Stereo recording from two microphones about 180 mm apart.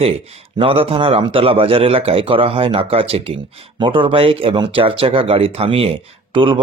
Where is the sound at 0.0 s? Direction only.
35° right (ahead or behind).